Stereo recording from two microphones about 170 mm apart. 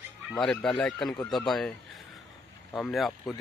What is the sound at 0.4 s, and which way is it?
Speech, 5° left (ahead or behind).